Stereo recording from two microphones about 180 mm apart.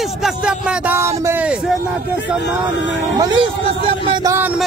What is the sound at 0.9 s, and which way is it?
Speech, 15° right (ahead or behind).